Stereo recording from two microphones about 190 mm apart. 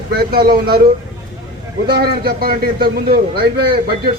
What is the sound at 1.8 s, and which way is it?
A man's voice, 55° right (ahead or behind).